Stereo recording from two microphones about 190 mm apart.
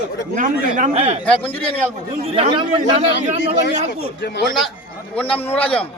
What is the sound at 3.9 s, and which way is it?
Speech, 65° left (ahead or behind).